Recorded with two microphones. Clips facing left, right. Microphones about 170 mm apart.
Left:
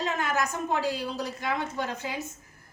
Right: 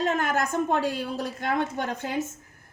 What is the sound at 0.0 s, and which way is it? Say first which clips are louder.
A woman's voice: right 3 dB; 55° right (ahead or behind).